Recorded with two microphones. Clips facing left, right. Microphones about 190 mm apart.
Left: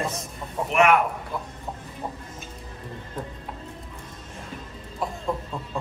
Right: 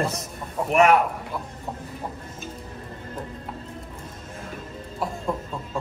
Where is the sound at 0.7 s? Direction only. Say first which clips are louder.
Right 2 dB; 40° right (ahead or behind).